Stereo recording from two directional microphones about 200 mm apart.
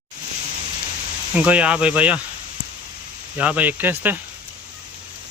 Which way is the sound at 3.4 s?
5° right (ahead or behind).